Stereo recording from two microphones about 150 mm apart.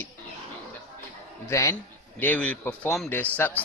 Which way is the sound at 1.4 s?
20° left (ahead or behind).